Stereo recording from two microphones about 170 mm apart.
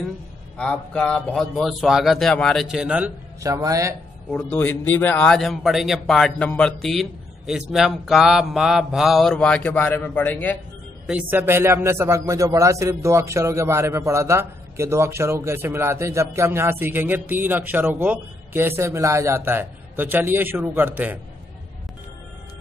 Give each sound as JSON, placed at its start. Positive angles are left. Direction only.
{"t": 0.6, "sound": "a man's voice", "side_deg": 5}
{"t": 3.3, "sound": "speech", "side_deg": -20}
{"t": 4.3, "sound": "a man's voice", "side_deg": 10}
{"t": 11.1, "sound": "a man's voice", "side_deg": -10}